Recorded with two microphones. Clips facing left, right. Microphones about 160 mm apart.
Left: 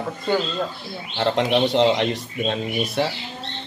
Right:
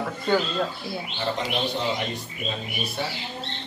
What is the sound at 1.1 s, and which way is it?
Speech, 85° left.